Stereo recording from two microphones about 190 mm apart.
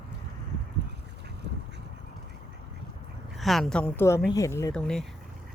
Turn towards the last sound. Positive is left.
turn(degrees=5)  # may be behind; listen again after turning